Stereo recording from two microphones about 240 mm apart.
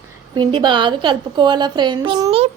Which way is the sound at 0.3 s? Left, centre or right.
Centre.